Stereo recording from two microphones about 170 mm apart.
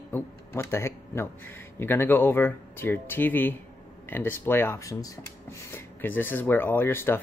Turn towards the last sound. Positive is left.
turn(degrees=15)  # may be behind; listen again after turning